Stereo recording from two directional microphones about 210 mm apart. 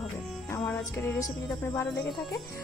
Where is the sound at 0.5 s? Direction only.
15° left (ahead or behind).